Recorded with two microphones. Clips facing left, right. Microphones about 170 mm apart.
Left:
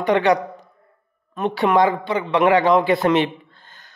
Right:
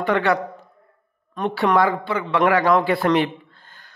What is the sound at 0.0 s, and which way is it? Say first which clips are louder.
Speech: left 3 dB; 20° left (ahead or behind).